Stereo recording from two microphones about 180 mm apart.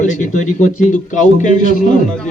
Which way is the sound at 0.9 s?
45° left (ahead or behind).